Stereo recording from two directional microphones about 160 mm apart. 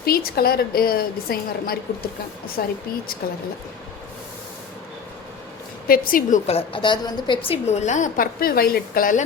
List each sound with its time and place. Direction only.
0.0 s a woman's voice: 70° left (ahead or behind)
5.9 s a woman's voice: 60° left (ahead or behind)
6.5 s a woman's voice: 35° left (ahead or behind); by 9.2 s 60° left (ahead or behind)